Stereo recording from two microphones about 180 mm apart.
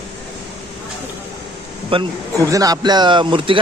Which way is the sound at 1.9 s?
30° right (ahead or behind).